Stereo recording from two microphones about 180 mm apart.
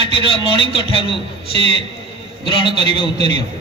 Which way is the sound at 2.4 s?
25° left (ahead or behind).